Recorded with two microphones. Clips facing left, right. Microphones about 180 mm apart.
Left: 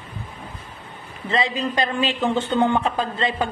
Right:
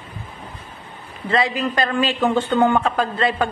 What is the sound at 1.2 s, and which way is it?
A man's voice, 20° left (ahead or behind).